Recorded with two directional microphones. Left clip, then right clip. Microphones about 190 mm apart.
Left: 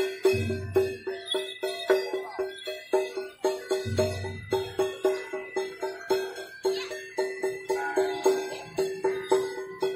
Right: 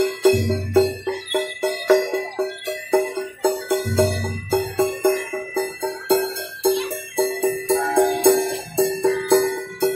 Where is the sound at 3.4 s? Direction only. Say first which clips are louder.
Right 7 dB; 30° left (ahead or behind).